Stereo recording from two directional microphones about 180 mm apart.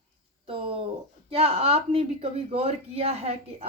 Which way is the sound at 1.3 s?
35° right (ahead or behind).